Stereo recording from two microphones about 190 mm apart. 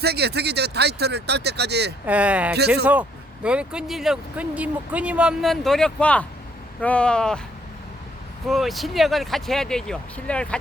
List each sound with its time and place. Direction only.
0.0 s speech: 60° right (ahead or behind)
2.0 s speech: 5° right (ahead or behind)
8.4 s speech: centre (ahead or behind)